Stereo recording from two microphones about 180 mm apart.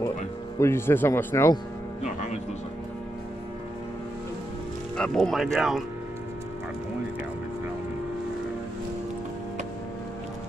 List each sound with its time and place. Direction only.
0.6 s speech: 15° left (ahead or behind)
2.0 s music: 40° left (ahead or behind)
4.9 s speech: 5° left (ahead or behind)